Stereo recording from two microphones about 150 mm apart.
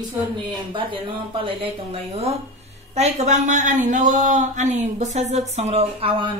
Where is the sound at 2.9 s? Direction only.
50° right (ahead or behind).